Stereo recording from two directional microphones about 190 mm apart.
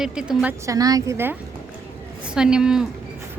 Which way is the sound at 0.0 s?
5° right (ahead or behind).